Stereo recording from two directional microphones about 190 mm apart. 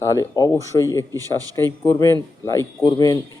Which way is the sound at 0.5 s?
15° right (ahead or behind).